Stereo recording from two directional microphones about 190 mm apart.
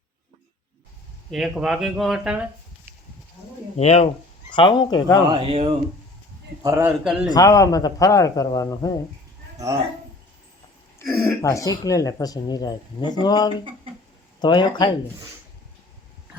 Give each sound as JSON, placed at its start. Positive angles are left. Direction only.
{"t": 1.3, "sound": "speech", "side_deg": 0}
{"t": 3.8, "sound": "speech", "side_deg": 30}
{"t": 5.3, "sound": "speech", "side_deg": -30}
{"t": 6.6, "sound": "a man's voice", "side_deg": -15}
{"t": 7.0, "sound": "speech", "side_deg": 0}
{"t": 7.3, "sound": "speech", "side_deg": 20}
{"t": 11.0, "sound": "speech", "side_deg": 15}